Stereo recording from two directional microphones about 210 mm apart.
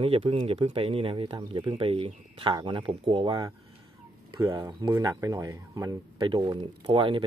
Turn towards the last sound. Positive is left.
turn(degrees=-25)  # may be behind; listen again after turning